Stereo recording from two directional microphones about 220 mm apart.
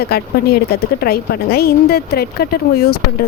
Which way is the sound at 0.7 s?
45° left (ahead or behind).